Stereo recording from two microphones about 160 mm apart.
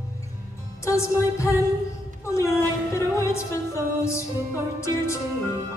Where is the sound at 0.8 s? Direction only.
20° left (ahead or behind).